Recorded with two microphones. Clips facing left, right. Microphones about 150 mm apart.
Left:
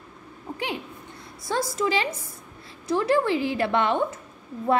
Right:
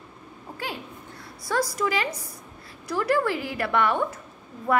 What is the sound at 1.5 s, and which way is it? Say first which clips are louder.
A woman's voice: left 1 dB; 25° left (ahead or behind).